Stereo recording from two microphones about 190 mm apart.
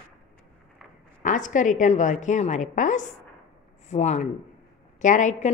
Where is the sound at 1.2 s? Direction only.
40° left (ahead or behind).